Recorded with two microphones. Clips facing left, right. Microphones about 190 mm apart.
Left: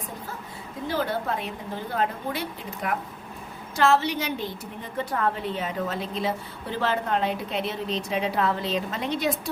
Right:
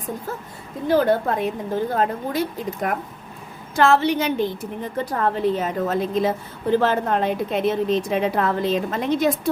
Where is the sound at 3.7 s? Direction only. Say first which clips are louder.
Right 4 dB; 55° right (ahead or behind).